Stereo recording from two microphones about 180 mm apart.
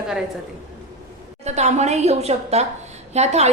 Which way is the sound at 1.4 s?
40° right (ahead or behind).